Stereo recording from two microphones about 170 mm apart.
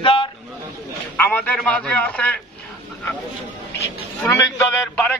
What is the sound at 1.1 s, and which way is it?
A man's voice, 10° left (ahead or behind).